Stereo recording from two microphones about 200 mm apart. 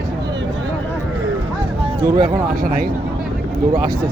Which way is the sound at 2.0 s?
25° right (ahead or behind).